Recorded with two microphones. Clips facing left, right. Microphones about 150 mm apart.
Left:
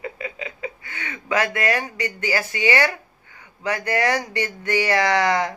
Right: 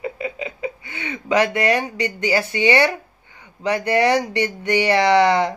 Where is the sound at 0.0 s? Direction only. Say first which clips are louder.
Right 5 dB; 25° right (ahead or behind).